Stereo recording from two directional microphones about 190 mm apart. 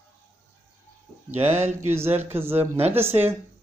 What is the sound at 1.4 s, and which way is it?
A man's voice, 10° right (ahead or behind).